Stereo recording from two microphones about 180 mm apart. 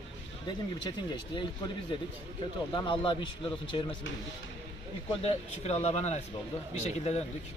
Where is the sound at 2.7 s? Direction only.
25° left (ahead or behind).